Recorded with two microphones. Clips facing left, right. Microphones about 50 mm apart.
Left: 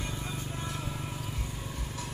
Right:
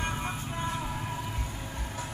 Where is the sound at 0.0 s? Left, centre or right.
Right.